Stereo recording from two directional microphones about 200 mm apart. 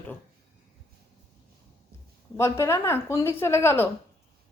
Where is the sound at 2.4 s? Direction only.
15° left (ahead or behind).